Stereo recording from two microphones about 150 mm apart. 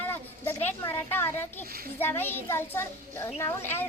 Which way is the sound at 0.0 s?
15° left (ahead or behind).